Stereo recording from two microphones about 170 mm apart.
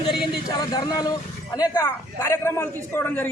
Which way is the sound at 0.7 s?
20° left (ahead or behind).